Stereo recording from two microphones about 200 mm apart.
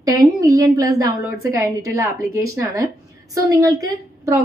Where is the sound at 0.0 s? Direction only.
15° right (ahead or behind).